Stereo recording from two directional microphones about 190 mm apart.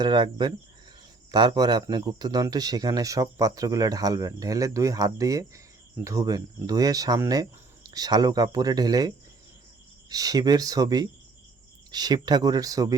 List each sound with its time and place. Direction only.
0.0 s a man's voice: 25° right (ahead or behind)